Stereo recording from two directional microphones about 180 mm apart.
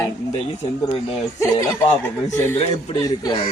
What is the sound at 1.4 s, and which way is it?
Speech, 15° left (ahead or behind).